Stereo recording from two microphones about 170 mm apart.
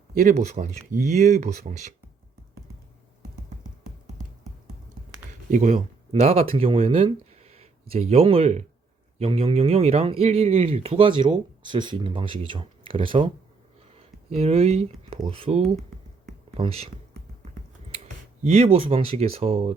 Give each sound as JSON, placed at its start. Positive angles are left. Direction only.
{"t": 0.1, "sound": "speech", "side_deg": -50}
{"t": 5.5, "sound": "speech", "side_deg": -45}
{"t": 17.9, "sound": "speech", "side_deg": -40}